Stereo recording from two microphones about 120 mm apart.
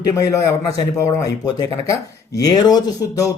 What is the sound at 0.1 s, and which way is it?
Speech, 25° left (ahead or behind).